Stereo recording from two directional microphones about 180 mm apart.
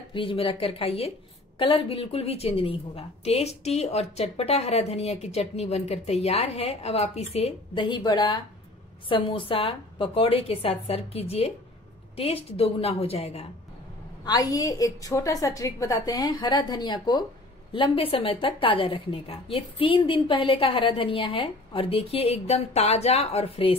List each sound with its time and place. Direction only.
0.1 s a woman's voice: 30° left (ahead or behind)
14.2 s a woman's voice: 20° left (ahead or behind)